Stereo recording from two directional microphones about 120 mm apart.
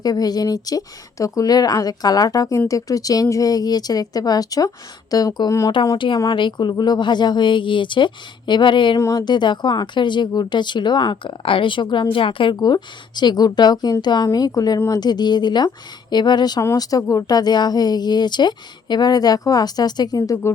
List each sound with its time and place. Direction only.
0.0 s a woman's voice: 35° left (ahead or behind)
6.2 s a woman's voice: 40° left (ahead or behind)
9.0 s a woman's voice: 30° left (ahead or behind)